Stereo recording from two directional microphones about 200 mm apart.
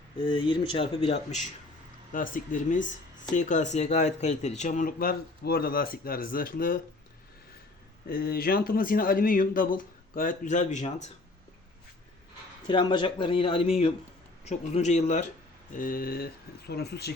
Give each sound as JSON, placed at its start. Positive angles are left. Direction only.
{"t": 0.2, "sound": "speech", "side_deg": 25}
{"t": 8.0, "sound": "speech", "side_deg": 50}
{"t": 12.6, "sound": "speech", "side_deg": 25}